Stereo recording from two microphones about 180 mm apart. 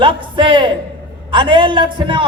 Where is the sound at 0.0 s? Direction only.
30° right (ahead or behind).